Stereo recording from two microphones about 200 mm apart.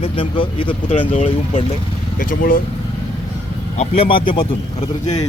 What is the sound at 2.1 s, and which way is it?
Speech, 45° left (ahead or behind).